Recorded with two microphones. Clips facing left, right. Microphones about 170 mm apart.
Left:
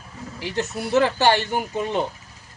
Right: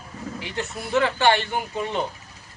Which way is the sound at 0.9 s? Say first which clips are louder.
Left 2 dB; 40° left (ahead or behind).